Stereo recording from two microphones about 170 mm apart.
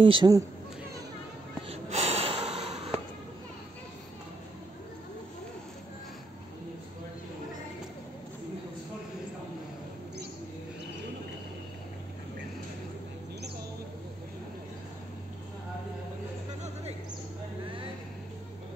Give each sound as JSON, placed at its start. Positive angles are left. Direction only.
{"t": 0.0, "sound": "speech", "side_deg": -30}
{"t": 1.7, "sound": "gasp", "side_deg": -40}